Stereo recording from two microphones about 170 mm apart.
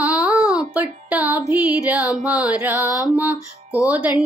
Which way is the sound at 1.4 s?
10° right (ahead or behind).